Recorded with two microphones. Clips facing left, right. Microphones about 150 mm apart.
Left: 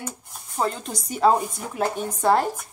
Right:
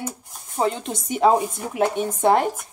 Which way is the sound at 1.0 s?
25° right (ahead or behind).